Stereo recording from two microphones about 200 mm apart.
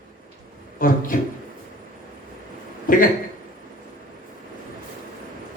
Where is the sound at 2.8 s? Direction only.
45° left (ahead or behind).